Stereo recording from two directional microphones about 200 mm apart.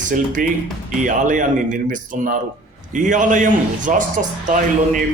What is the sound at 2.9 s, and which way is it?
A man's voice, 40° right (ahead or behind).